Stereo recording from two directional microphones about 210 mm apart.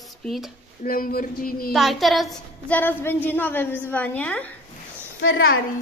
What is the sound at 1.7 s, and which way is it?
A woman's voice, centre (ahead or behind).